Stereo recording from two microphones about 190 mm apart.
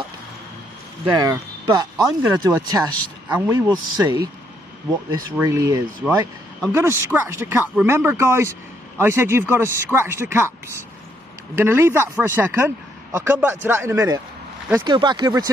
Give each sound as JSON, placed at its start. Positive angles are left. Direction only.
{"t": 1.2, "sound": "speech", "side_deg": -20}
{"t": 11.5, "sound": "speech", "side_deg": -10}